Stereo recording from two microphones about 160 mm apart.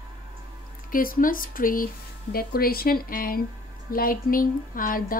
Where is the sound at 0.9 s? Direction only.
60° left (ahead or behind).